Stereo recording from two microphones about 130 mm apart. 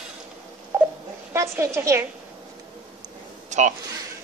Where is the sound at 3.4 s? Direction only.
65° right (ahead or behind).